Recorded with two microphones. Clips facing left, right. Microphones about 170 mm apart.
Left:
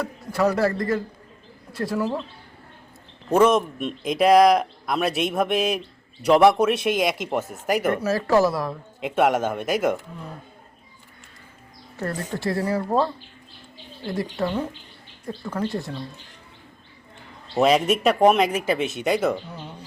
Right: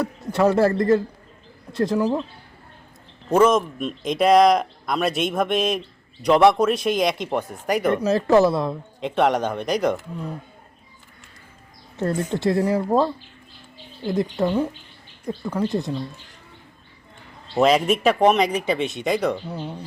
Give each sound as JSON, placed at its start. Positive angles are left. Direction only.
{"t": 0.0, "sound": "speech", "side_deg": -25}
{"t": 3.3, "sound": "speech", "side_deg": 5}
{"t": 8.0, "sound": "speech", "side_deg": -20}
{"t": 9.0, "sound": "speech", "side_deg": 5}
{"t": 11.9, "sound": "speech", "side_deg": -20}
{"t": 14.1, "sound": "speech", "side_deg": -20}
{"t": 17.5, "sound": "speech", "side_deg": 0}